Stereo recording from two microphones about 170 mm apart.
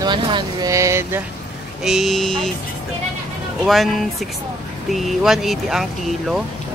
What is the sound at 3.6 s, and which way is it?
Speech, centre (ahead or behind).